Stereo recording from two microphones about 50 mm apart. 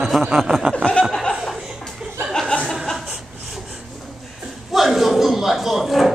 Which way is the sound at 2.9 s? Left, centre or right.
Centre.